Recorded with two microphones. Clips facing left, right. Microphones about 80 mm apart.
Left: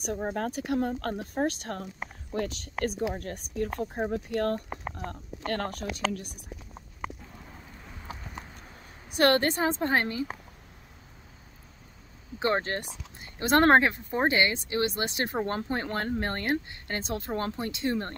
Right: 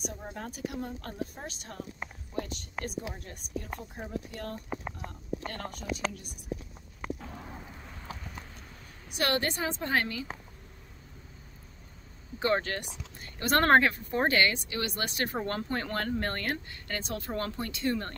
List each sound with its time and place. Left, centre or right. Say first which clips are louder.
0.1 s speech: left 10 dB; left
0.5 s speech: left 8 dB; left
2.3 s speech: left 5 dB; left
2.8 s speech: left 8 dB; left
3.9 s speech: left 8 dB; left
4.3 s speech: left 12 dB; left
5.5 s speech: left 8 dB; left
9.1 s a woman's voice: left 7 dB; left
12.4 s speech: left 1 dB; left